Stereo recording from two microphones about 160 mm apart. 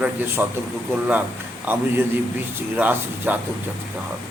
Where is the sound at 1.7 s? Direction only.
10° right (ahead or behind).